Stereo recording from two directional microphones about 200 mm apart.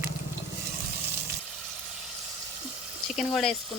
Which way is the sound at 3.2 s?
Centre (ahead or behind).